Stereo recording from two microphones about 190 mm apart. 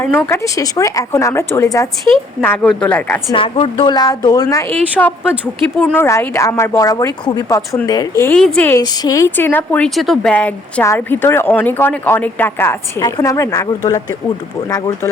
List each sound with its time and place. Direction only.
0.3 s speech: 15° left (ahead or behind)
3.3 s speech: 30° left (ahead or behind)
8.3 s speech: 5° left (ahead or behind); by 15.1 s 20° left (ahead or behind)